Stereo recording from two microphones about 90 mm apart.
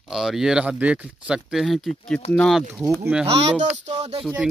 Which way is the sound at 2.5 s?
5° right (ahead or behind).